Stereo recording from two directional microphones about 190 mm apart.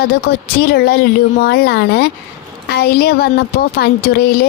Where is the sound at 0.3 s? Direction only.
55° left (ahead or behind).